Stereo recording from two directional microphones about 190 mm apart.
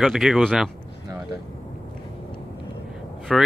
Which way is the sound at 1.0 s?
20° right (ahead or behind).